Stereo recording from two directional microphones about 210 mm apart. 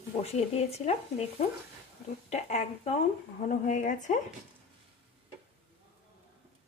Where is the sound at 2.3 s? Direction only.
30° left (ahead or behind).